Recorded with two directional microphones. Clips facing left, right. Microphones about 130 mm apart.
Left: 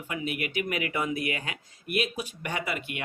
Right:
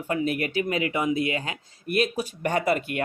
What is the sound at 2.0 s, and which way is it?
Speech, 40° right (ahead or behind).